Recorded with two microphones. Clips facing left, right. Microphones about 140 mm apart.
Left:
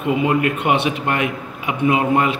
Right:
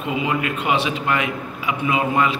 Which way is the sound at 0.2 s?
55° left (ahead or behind).